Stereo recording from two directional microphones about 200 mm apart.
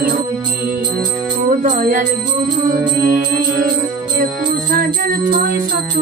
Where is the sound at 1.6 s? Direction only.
40° right (ahead or behind).